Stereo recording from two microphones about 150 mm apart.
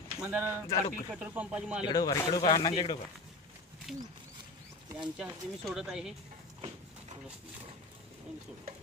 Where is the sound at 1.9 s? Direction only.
20° left (ahead or behind).